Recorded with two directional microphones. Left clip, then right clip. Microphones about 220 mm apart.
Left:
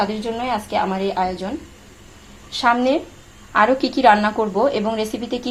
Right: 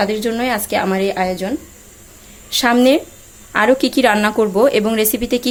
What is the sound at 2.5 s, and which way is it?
A woman's voice, 50° right (ahead or behind).